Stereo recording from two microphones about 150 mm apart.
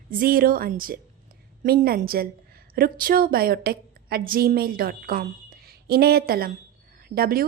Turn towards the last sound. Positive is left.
turn(degrees=-85)